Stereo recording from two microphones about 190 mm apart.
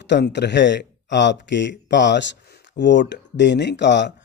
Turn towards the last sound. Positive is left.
turn(degrees=65)  # may be behind; listen again after turning